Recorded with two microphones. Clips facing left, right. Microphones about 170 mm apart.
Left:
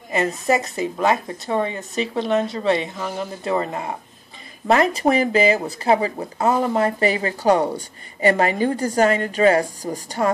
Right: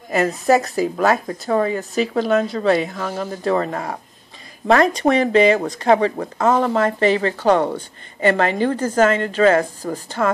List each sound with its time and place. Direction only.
0.1 s a woman's voice: centre (ahead or behind); by 10.3 s 15° left (ahead or behind)